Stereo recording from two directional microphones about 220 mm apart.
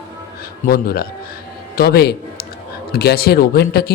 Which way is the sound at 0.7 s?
45° left (ahead or behind).